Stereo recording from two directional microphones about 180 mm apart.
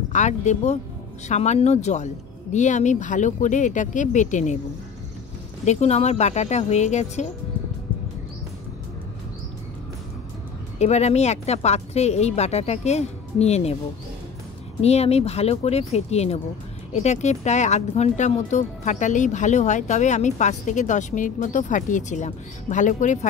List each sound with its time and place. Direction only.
0.1 s speech: 40° left (ahead or behind)
5.7 s speech: 35° left (ahead or behind)
10.8 s speech: 40° left (ahead or behind)
14.8 s speech: 35° left (ahead or behind)